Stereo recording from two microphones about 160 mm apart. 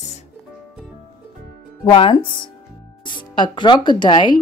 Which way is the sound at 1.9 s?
30° left (ahead or behind).